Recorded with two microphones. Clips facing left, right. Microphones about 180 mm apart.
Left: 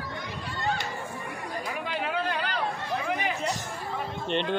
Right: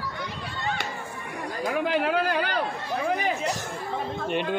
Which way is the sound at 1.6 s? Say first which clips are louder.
Right 10 dB; 60° right (ahead or behind).